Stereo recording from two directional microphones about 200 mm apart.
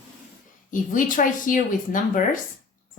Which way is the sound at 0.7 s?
40° left (ahead or behind).